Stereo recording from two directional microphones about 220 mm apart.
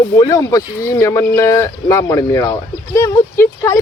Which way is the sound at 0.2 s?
15° left (ahead or behind).